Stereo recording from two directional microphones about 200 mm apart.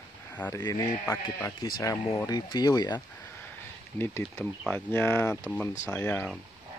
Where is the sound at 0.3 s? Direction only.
10° left (ahead or behind).